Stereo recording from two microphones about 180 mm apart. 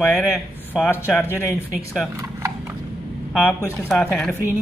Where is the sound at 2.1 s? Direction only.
15° right (ahead or behind).